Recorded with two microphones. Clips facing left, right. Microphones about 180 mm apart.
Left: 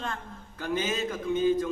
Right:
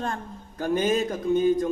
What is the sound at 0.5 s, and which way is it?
Speech, 50° right (ahead or behind).